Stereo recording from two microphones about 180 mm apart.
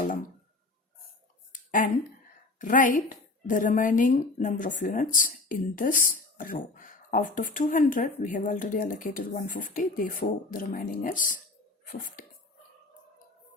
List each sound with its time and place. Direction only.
2.6 s speech: 45° left (ahead or behind)